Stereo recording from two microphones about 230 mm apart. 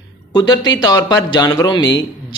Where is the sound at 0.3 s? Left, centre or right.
Centre.